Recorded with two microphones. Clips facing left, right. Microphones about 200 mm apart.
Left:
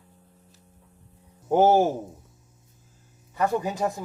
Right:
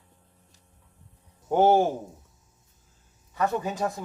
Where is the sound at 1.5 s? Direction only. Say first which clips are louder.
Left 1 dB; 10° left (ahead or behind).